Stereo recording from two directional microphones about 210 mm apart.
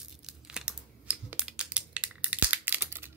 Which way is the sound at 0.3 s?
5° right (ahead or behind).